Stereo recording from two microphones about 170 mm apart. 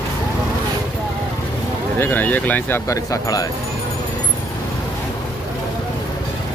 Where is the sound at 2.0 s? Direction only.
10° left (ahead or behind).